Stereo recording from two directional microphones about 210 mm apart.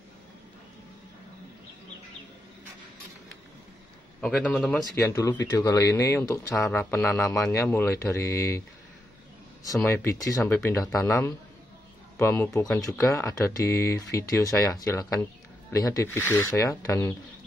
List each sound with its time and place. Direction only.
4.2 s a man's voice: 5° left (ahead or behind)
4.9 s speech: 15° left (ahead or behind)
9.8 s speech: 10° left (ahead or behind)